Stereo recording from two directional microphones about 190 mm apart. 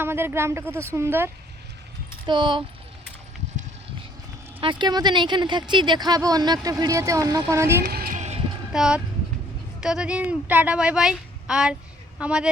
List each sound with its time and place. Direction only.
0.0 s speech: 10° right (ahead or behind)
2.2 s speech: 25° right (ahead or behind)
4.6 s speech: 25° right (ahead or behind)
7.8 s a sound: 50° right (ahead or behind)
8.7 s a woman's voice: 5° right (ahead or behind)